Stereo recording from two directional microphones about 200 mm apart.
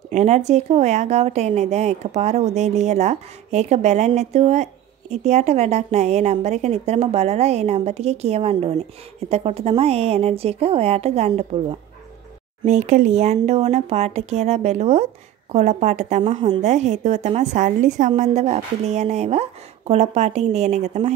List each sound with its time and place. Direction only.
0.1 s speech: 35° right (ahead or behind)
12.6 s speech: 35° right (ahead or behind)